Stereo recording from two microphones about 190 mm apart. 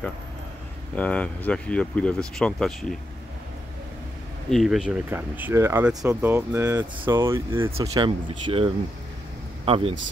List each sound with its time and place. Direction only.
0.9 s speech: 5° left (ahead or behind)
4.5 s speech: centre (ahead or behind); by 8.7 s 25° right (ahead or behind)